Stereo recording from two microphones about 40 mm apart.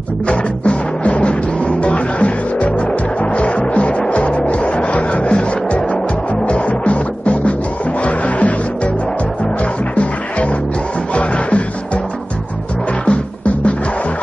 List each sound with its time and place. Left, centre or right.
0.3 s music: left